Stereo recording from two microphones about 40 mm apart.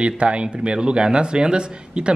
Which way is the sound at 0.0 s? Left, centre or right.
Right.